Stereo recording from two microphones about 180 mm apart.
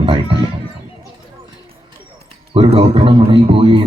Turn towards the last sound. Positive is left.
turn(degrees=-30)  # may be behind; listen again after turning